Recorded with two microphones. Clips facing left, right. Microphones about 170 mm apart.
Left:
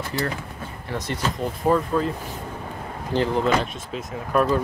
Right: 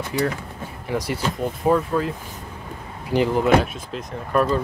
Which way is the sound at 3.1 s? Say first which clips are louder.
Right 2 dB; 10° right (ahead or behind).